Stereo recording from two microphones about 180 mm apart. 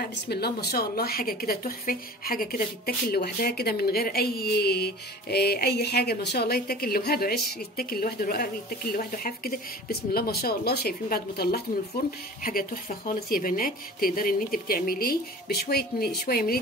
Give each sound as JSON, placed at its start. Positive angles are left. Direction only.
{"t": 0.0, "sound": "speech", "side_deg": 65}